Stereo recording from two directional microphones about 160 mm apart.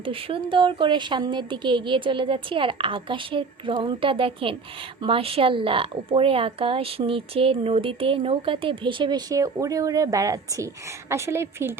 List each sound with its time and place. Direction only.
0.0 s a woman's voice: 35° right (ahead or behind); by 11.7 s 15° right (ahead or behind)